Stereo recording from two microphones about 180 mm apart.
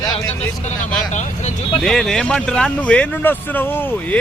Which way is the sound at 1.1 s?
40° left (ahead or behind).